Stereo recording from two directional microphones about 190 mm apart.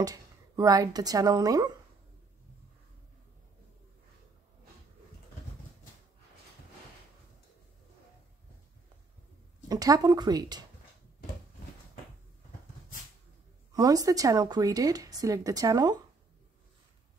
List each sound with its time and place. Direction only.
0.0 s speech: 20° right (ahead or behind)
9.7 s speech: 20° right (ahead or behind)
13.7 s speech: 20° right (ahead or behind)